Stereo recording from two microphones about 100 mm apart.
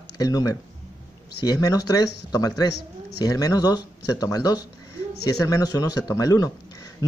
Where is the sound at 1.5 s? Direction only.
40° left (ahead or behind).